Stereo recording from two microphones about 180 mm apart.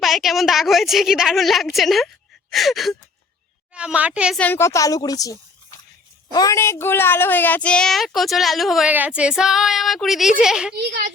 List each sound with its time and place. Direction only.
0.0 s a woman's voice: centre (ahead or behind)
4.4 s a woman's voice: 10° left (ahead or behind)